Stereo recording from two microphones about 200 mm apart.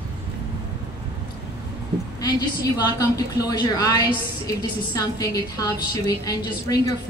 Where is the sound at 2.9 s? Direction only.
20° left (ahead or behind).